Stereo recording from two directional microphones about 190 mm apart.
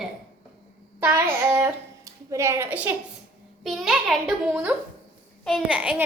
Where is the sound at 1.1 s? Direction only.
15° right (ahead or behind).